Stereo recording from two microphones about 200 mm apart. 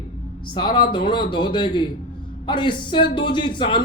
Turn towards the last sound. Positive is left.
turn(degrees=25)  # may be behind; listen again after turning